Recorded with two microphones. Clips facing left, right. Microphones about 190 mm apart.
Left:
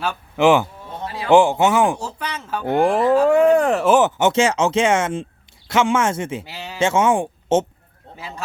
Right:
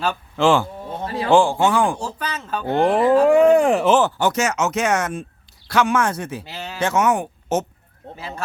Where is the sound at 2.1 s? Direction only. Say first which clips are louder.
Even; 10° left (ahead or behind).